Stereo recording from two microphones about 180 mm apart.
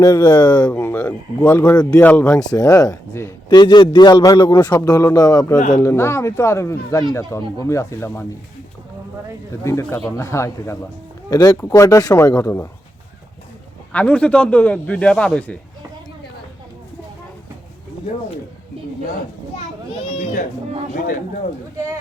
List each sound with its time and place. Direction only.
0.0 s speech: 15° left (ahead or behind)
2.6 s a man's voice: 15° left (ahead or behind)
5.5 s speech: 45° left (ahead or behind)
5.8 s speech: 15° left (ahead or behind)
9.6 s speech: 15° left (ahead or behind)
13.9 s speech: 5° left (ahead or behind)